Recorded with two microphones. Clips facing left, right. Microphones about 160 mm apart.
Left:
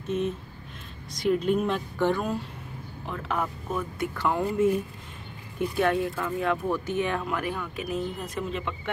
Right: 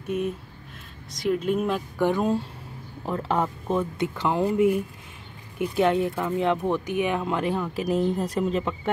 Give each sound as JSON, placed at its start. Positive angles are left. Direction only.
{"t": 0.0, "sound": "speech", "side_deg": -10}
{"t": 2.0, "sound": "speech", "side_deg": -20}
{"t": 3.1, "sound": "speech", "side_deg": -30}